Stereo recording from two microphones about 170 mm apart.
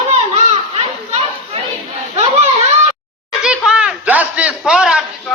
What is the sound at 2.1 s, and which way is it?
Children playing, 40° right (ahead or behind).